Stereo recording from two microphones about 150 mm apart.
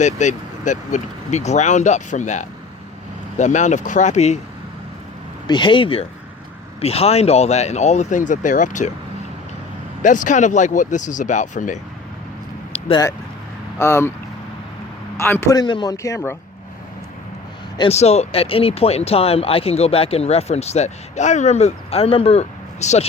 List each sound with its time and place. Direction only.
0.0 s speech: 50° left (ahead or behind)
5.5 s speech: 30° left (ahead or behind); by 8.9 s 55° left (ahead or behind)
10.0 s speech: 55° left (ahead or behind)
13.7 s speech: 15° left (ahead or behind)
15.2 s a man's voice: 15° left (ahead or behind)
17.8 s speech: 45° left (ahead or behind)